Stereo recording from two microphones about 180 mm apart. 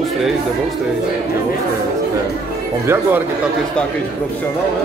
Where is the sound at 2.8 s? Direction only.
15° right (ahead or behind).